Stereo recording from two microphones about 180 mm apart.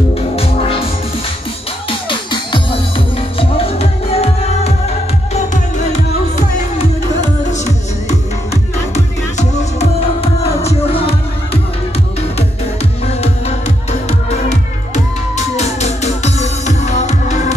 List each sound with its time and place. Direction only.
0.1 s music: 30° left (ahead or behind)
1.9 s music: 30° left (ahead or behind)
13.0 s music: 35° left (ahead or behind)
15.3 s music: 40° left (ahead or behind)